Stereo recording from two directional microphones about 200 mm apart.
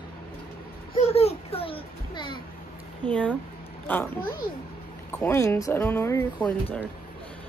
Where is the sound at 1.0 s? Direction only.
30° left (ahead or behind).